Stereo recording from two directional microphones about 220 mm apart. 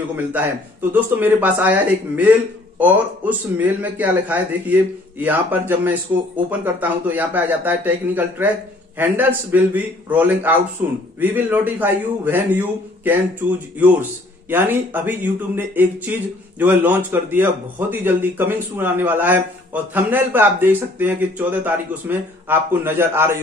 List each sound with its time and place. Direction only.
0.1 s a man's voice: 10° right (ahead or behind)